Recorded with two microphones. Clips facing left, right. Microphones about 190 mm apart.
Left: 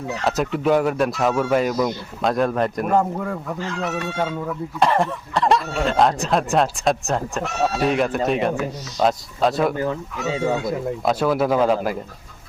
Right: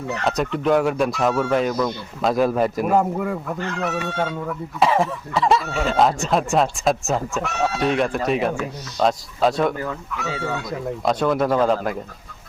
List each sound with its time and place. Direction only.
0.3 s speech: 5° left (ahead or behind)
2.2 s speech: 5° right (ahead or behind)
4.8 s speech: centre (ahead or behind)
9.7 s speech: 25° left (ahead or behind)
11.0 s speech: 5° left (ahead or behind)